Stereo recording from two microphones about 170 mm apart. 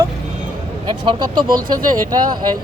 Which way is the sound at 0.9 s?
25° right (ahead or behind).